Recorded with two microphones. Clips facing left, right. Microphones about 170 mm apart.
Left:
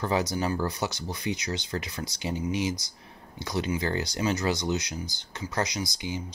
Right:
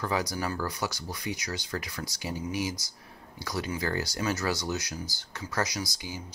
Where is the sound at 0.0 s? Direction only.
25° left (ahead or behind).